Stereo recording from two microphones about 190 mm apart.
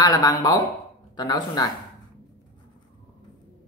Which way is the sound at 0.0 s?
20° left (ahead or behind).